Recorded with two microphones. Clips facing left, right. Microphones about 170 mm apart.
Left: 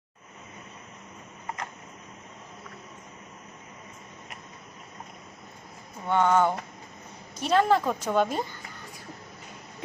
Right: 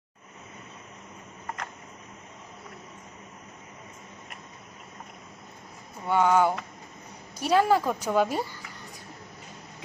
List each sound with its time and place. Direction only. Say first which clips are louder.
6.1 s a woman's voice: even; 10° right (ahead or behind)